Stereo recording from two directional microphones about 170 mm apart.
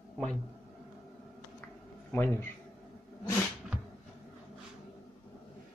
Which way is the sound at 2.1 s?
10° left (ahead or behind).